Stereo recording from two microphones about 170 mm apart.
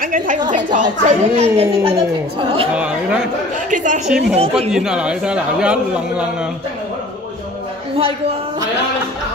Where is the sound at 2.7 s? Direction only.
5° right (ahead or behind).